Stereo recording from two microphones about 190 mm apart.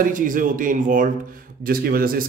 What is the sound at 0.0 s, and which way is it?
Speech, 45° right (ahead or behind).